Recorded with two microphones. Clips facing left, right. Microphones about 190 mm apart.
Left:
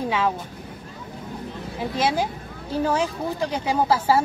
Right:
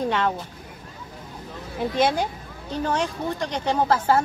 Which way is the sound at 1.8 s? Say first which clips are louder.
Right 2 dB; centre (ahead or behind).